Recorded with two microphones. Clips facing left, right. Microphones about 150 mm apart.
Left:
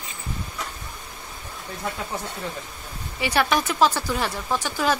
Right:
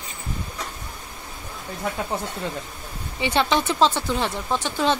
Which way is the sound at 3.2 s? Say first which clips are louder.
Right 1 dB; 25° right (ahead or behind).